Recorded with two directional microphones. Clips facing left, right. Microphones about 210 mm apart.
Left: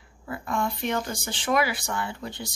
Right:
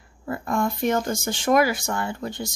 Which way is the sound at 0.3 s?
45° right (ahead or behind).